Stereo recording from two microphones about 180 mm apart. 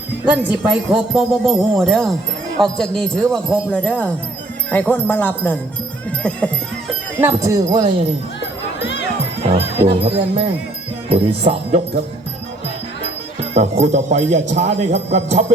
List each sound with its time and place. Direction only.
0.3 s speech: 5° right (ahead or behind)
4.7 s music: 10° left (ahead or behind)
7.2 s jingle bell: 15° right (ahead or behind)
9.5 s speech: 30° right (ahead or behind)
13.5 s speech: 35° right (ahead or behind)